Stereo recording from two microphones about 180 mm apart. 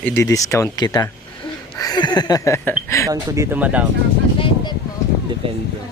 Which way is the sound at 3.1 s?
15° right (ahead or behind).